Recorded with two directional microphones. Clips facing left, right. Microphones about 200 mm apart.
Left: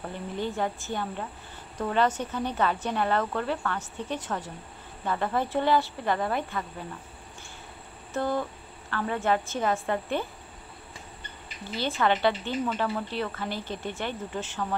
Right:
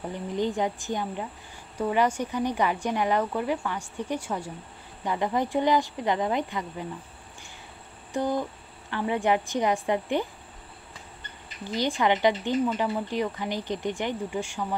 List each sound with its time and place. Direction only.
0.0 s speech: 15° right (ahead or behind)
8.1 s speech: 15° right (ahead or behind)
11.6 s speech: 15° right (ahead or behind)